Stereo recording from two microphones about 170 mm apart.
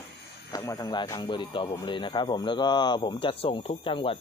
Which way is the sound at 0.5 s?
20° left (ahead or behind).